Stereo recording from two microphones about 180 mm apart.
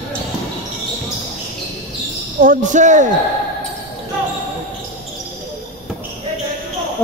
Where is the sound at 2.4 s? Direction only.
45° right (ahead or behind).